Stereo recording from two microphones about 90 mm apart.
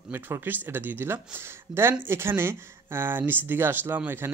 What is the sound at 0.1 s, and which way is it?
Speech, 25° right (ahead or behind).